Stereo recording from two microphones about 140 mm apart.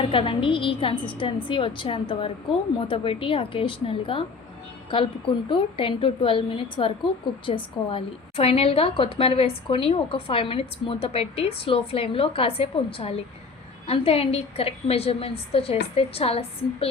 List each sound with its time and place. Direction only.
0.1 s a woman's voice: 40° left (ahead or behind)
5.5 s a woman's voice: 40° left (ahead or behind)